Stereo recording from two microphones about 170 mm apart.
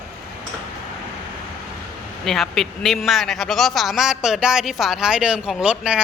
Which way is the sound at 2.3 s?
Centre (ahead or behind).